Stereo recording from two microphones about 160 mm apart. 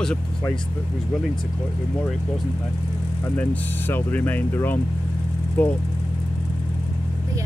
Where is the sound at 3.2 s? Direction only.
10° left (ahead or behind).